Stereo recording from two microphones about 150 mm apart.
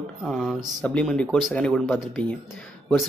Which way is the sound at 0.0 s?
Centre (ahead or behind).